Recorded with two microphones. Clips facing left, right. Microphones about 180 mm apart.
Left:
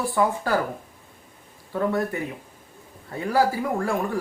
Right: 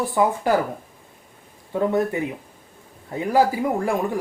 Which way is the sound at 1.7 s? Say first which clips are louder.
Right 3 dB; 20° right (ahead or behind).